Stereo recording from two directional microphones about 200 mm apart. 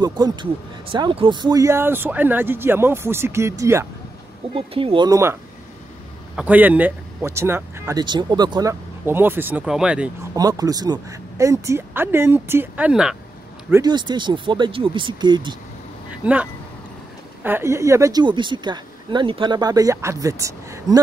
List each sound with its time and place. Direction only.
0.0 s speech: 20° right (ahead or behind)
4.6 s speech: 25° right (ahead or behind); by 10.1 s 5° right (ahead or behind)
10.3 s speech: 20° right (ahead or behind)
13.7 s speech: 15° right (ahead or behind)
16.1 s vehicle: 5° right (ahead or behind)
17.4 s speech: 10° right (ahead or behind)